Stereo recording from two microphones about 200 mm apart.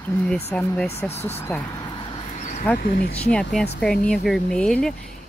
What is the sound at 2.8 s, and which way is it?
Speech, 45° left (ahead or behind).